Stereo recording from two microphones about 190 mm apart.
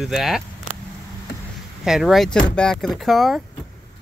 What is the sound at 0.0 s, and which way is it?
Speech, centre (ahead or behind).